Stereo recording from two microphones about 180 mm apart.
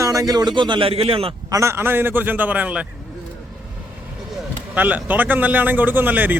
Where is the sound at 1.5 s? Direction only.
15° right (ahead or behind).